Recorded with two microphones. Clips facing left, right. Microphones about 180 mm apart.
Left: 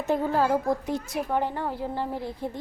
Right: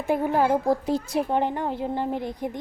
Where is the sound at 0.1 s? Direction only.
15° right (ahead or behind).